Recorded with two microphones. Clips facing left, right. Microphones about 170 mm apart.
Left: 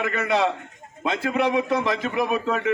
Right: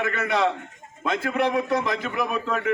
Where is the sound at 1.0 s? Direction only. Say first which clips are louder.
Left 1 dB; 25° left (ahead or behind).